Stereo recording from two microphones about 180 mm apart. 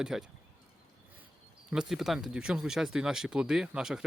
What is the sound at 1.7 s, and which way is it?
Speech, centre (ahead or behind).